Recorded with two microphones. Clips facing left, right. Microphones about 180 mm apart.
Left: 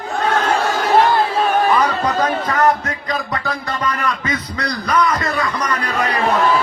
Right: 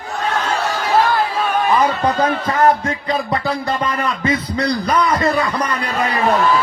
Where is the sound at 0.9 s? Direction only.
25° left (ahead or behind).